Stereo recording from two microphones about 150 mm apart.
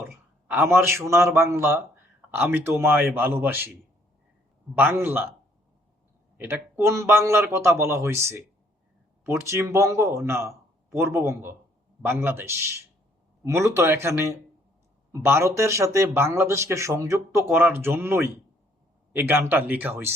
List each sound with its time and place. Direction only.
0.0 s speech: 15° right (ahead or behind)
4.8 s speech: 15° right (ahead or behind)
6.3 s speech: 15° right (ahead or behind)